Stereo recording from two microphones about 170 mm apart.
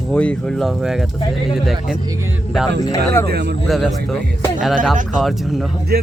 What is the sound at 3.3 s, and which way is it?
Speech, 70° right (ahead or behind).